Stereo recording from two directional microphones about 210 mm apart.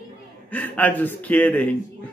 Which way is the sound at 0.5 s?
5° left (ahead or behind).